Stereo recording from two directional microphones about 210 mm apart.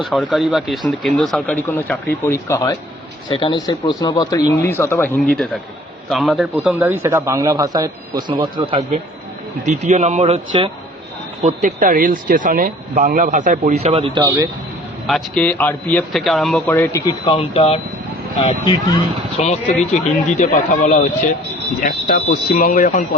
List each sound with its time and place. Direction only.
0.0 s a man's voice: centre (ahead or behind); by 10.7 s 25° right (ahead or behind)
11.4 s speech: 40° right (ahead or behind); by 14.4 s 15° right (ahead or behind)
15.0 s a man's voice: 5° left (ahead or behind); by 23.0 s 40° left (ahead or behind)